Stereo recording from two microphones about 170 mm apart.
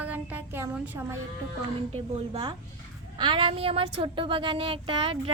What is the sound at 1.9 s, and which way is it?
Speech, 35° right (ahead or behind).